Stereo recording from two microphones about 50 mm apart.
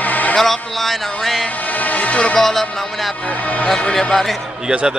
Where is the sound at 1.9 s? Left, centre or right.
Left.